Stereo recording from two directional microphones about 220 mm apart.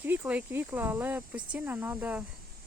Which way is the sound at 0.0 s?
10° right (ahead or behind).